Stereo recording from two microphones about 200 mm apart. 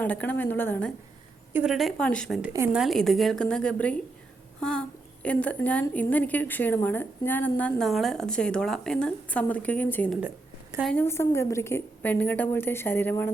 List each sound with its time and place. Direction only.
0.0 s a woman's voice: 10° left (ahead or behind)
1.5 s a woman's voice: centre (ahead or behind)
10.2 s a sound: 10° right (ahead or behind)
10.8 s a woman's voice: 10° left (ahead or behind)